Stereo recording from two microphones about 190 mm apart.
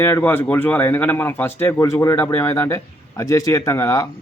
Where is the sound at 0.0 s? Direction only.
10° left (ahead or behind).